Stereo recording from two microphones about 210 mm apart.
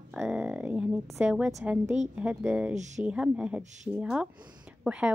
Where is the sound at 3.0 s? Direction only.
5° right (ahead or behind).